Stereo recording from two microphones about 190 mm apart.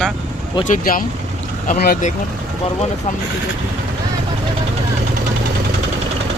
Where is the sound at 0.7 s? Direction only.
45° left (ahead or behind).